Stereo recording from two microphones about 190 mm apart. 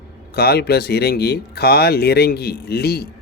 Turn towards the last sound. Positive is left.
turn(degrees=55)  # may be behind; listen again after turning